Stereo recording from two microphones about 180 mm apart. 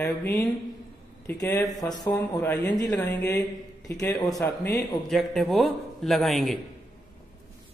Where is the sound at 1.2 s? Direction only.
15° left (ahead or behind).